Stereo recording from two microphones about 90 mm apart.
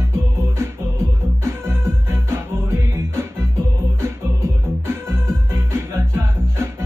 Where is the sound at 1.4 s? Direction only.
30° right (ahead or behind).